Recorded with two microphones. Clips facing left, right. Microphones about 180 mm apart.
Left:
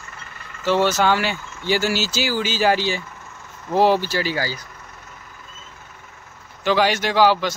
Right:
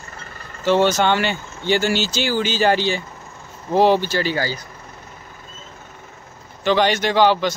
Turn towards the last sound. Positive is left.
turn(degrees=5)  # may be behind; listen again after turning